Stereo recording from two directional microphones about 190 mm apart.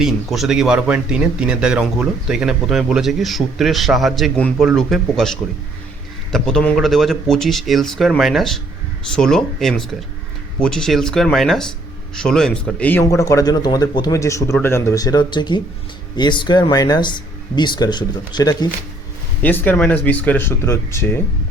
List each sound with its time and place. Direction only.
0.0 s speech: centre (ahead or behind); by 18.7 s 20° left (ahead or behind)
19.4 s speech: 10° left (ahead or behind)